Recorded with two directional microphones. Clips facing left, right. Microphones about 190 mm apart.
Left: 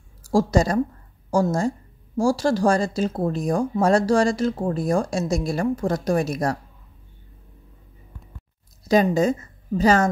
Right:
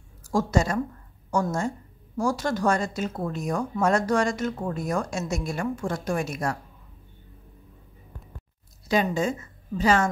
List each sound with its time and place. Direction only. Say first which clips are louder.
0.3 s speech: left 5 dB; 35° left (ahead or behind)
8.8 s a woman's voice: left 6 dB; 40° left (ahead or behind)